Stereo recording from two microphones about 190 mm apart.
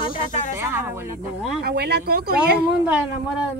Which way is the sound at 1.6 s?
60° right (ahead or behind).